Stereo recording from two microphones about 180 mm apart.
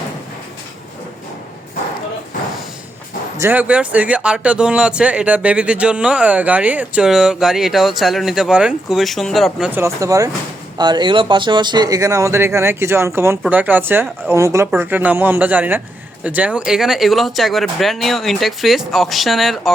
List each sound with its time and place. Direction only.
3.4 s speech: 10° right (ahead or behind)